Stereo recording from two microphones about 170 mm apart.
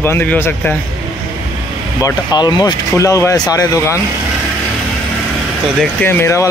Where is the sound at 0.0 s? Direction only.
10° left (ahead or behind).